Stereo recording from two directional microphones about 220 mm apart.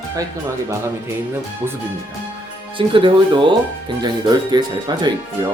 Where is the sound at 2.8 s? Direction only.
25° right (ahead or behind).